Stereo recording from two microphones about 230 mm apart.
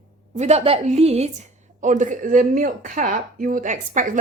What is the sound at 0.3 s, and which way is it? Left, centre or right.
A woman's voice, right.